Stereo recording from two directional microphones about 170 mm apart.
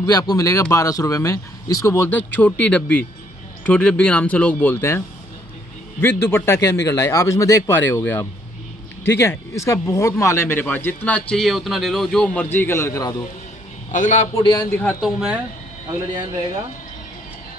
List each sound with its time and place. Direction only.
0.0 s speech: 20° left (ahead or behind)
13.9 s a man's voice: 45° left (ahead or behind); by 14.7 s 30° left (ahead or behind)
14.7 s speech: 10° left (ahead or behind)
15.0 s speech: 5° right (ahead or behind)